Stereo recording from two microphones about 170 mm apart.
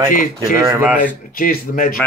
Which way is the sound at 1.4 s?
55° left (ahead or behind).